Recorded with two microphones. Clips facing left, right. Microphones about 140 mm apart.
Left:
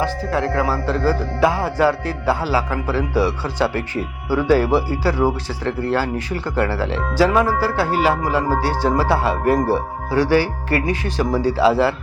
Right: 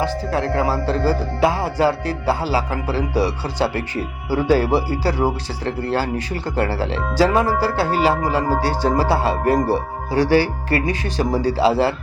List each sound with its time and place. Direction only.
0.0 s speech: 30° right (ahead or behind)